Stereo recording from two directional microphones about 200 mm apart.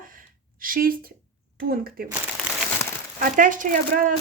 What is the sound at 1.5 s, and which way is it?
Speech, 50° right (ahead or behind).